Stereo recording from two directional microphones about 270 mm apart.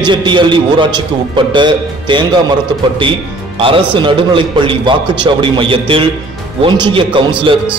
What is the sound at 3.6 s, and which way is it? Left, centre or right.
A man's voice, centre.